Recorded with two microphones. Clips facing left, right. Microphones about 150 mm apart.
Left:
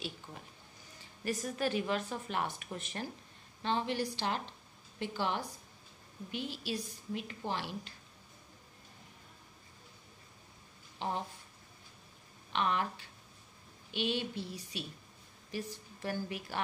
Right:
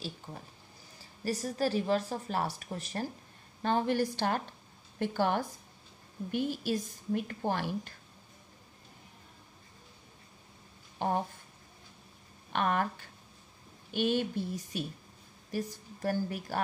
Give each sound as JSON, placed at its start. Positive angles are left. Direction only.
{"t": 1.2, "sound": "a woman's voice", "side_deg": -35}
{"t": 3.6, "sound": "a woman's voice", "side_deg": -45}
{"t": 11.0, "sound": "a sound", "side_deg": -50}
{"t": 12.5, "sound": "a woman's voice", "side_deg": -50}